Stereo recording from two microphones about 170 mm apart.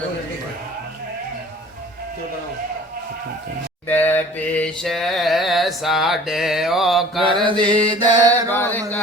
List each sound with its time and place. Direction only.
3.8 s mantra: 10° left (ahead or behind)
7.4 s mantra: 30° right (ahead or behind)
8.4 s chant: 10° left (ahead or behind)